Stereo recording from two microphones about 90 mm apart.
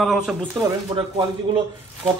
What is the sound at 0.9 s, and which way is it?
Speech, 55° right (ahead or behind).